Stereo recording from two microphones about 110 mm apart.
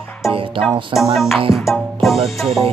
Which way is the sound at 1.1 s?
Centre (ahead or behind).